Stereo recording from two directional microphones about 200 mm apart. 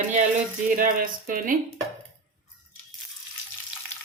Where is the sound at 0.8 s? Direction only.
45° right (ahead or behind).